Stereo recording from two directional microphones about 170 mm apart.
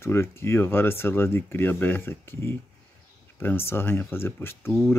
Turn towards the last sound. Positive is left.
turn(degrees=15)  # may be behind; listen again after turning